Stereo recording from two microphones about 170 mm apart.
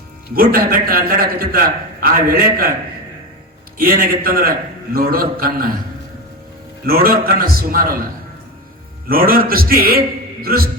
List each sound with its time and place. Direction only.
0.3 s a man's voice: 60° right (ahead or behind)
3.8 s a man's voice: 60° right (ahead or behind)
6.8 s a man's voice: 60° right (ahead or behind)
9.0 s a man's voice: 60° right (ahead or behind)